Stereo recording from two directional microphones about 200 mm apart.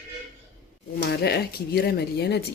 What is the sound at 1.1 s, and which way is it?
Speech, 55° left (ahead or behind).